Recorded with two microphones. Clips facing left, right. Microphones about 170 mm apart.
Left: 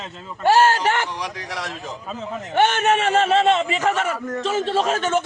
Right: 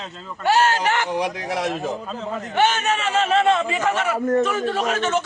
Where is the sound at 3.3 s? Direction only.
25° left (ahead or behind).